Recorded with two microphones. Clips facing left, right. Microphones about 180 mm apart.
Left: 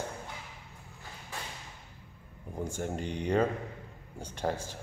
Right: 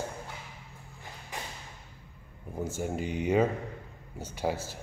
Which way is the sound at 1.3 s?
15° right (ahead or behind).